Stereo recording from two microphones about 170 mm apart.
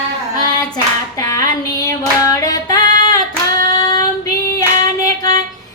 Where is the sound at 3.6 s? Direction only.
55° right (ahead or behind).